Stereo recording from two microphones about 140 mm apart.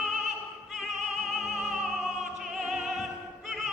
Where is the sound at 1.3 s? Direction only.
Centre (ahead or behind).